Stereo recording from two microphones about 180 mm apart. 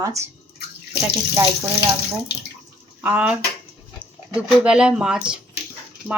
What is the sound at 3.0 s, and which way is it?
Speech, 10° right (ahead or behind).